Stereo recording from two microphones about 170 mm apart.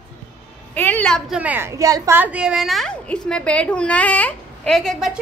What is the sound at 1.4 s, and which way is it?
A woman's voice, 10° right (ahead or behind).